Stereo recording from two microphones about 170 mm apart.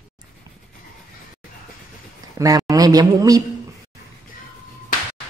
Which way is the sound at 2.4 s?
20° right (ahead or behind).